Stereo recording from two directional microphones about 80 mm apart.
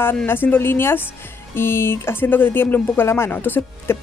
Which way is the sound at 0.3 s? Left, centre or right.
Left.